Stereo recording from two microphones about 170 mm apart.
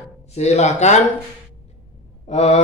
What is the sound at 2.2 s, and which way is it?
Speech, 40° left (ahead or behind).